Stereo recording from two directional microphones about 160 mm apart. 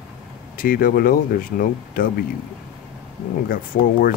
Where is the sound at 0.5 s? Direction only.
60° left (ahead or behind).